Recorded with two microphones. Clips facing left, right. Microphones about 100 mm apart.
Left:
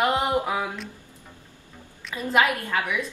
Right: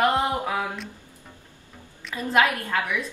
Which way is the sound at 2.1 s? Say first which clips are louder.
Even; 5° left (ahead or behind).